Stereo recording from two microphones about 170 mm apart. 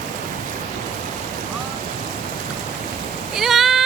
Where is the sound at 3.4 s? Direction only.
Centre (ahead or behind).